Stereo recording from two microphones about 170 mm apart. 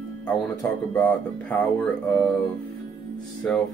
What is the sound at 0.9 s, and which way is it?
Speech, 5° left (ahead or behind).